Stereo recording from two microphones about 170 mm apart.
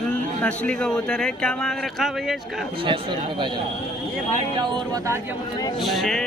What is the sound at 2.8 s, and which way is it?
Speech, 30° right (ahead or behind).